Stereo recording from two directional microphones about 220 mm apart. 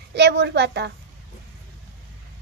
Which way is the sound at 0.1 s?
50° right (ahead or behind).